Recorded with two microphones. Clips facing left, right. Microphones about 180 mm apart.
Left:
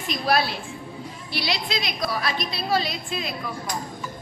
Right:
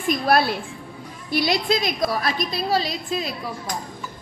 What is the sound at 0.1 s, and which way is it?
A woman's voice, 55° right (ahead or behind).